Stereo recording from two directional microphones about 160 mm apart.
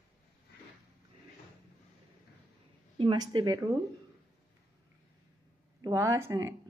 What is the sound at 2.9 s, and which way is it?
Speech, 30° right (ahead or behind).